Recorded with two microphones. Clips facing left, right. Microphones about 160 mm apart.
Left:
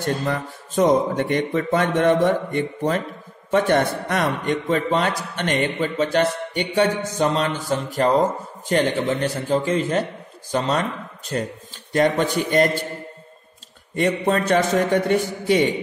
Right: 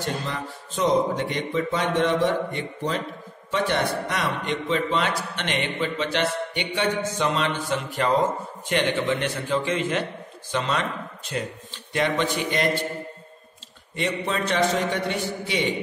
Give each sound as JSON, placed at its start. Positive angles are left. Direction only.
{"t": 0.3, "sound": "a man's voice", "side_deg": 50}
{"t": 13.9, "sound": "a man's voice", "side_deg": 45}